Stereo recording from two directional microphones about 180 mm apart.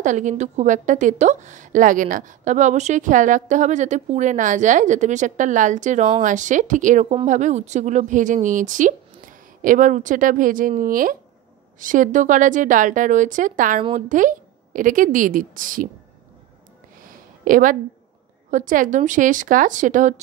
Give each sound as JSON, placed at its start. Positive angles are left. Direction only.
{"t": 0.0, "sound": "a woman's voice", "side_deg": -45}
{"t": 17.0, "sound": "a sound", "side_deg": -50}
{"t": 18.5, "sound": "a woman's voice", "side_deg": -45}